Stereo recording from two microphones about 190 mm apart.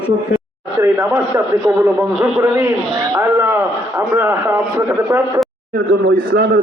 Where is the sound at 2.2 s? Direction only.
5° right (ahead or behind).